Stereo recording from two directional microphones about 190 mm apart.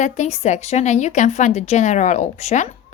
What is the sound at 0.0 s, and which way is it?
Speech, 35° left (ahead or behind).